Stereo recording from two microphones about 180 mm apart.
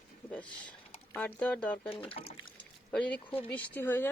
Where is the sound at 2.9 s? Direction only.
5° left (ahead or behind).